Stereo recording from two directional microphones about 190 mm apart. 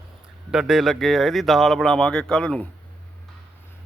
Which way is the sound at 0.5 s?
5° right (ahead or behind).